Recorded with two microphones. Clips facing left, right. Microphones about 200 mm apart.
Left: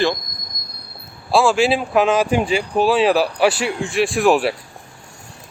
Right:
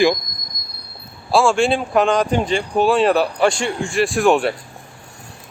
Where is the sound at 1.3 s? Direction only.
Centre (ahead or behind).